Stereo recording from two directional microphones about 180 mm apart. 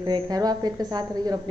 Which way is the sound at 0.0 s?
20° right (ahead or behind).